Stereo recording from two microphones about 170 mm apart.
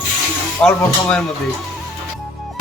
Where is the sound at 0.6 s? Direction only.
5° left (ahead or behind).